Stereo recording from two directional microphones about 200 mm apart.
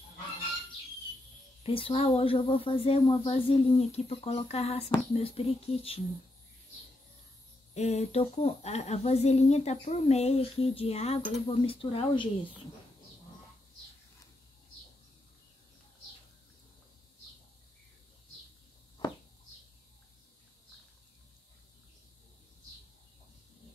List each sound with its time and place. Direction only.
1.6 s speech: 25° left (ahead or behind)
7.7 s speech: 35° left (ahead or behind)